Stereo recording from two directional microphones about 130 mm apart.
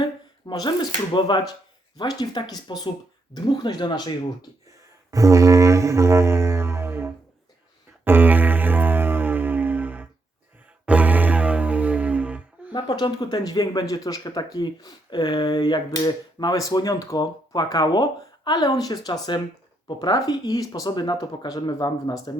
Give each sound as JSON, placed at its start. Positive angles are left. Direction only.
{"t": 0.0, "sound": "speech", "side_deg": 30}
{"t": 5.1, "sound": "didgeridoo", "side_deg": -25}
{"t": 8.0, "sound": "music", "side_deg": -15}
{"t": 12.7, "sound": "speech", "side_deg": 35}